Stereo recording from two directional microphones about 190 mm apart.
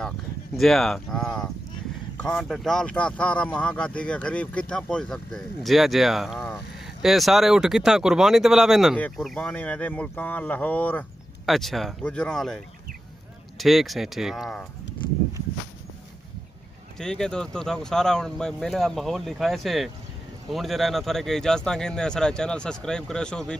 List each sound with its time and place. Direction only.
0.6 s speech: centre (ahead or behind)
17.0 s speech: 5° left (ahead or behind)